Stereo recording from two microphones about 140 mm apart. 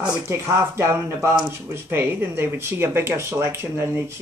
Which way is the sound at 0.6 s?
20° right (ahead or behind).